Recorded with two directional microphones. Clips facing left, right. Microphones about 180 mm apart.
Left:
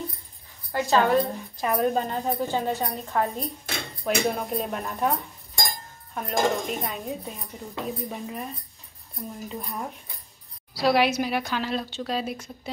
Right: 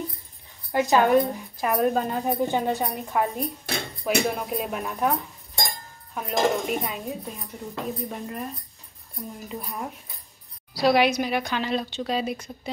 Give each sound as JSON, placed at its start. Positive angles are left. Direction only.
{"t": 0.7, "sound": "a woman's voice", "side_deg": -15}
{"t": 2.2, "sound": "a woman's voice", "side_deg": -15}
{"t": 9.5, "sound": "speech", "side_deg": 0}